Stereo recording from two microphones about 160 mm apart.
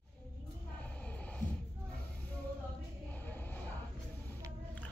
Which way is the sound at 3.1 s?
10° left (ahead or behind).